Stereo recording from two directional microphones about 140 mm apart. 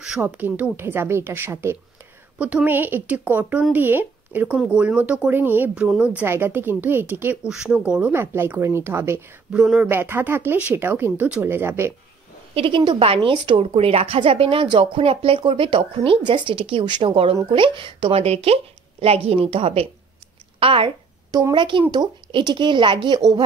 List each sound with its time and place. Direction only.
0.0 s speech: 10° right (ahead or behind)
9.5 s speech: 5° right (ahead or behind)
12.5 s a woman's voice: 40° right (ahead or behind)
21.3 s a woman's voice: 30° right (ahead or behind)